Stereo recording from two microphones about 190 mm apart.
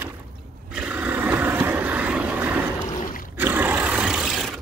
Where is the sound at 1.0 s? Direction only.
10° right (ahead or behind).